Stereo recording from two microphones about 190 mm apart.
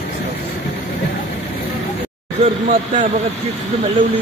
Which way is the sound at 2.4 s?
40° right (ahead or behind).